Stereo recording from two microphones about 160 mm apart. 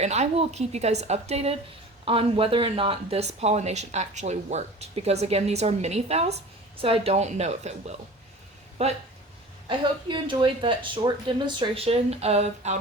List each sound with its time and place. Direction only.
0.0 s a woman's voice: 45° right (ahead or behind)
9.6 s speech: 30° right (ahead or behind)